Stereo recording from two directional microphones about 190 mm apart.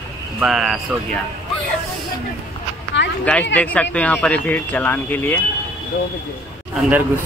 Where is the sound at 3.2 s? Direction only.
5° left (ahead or behind).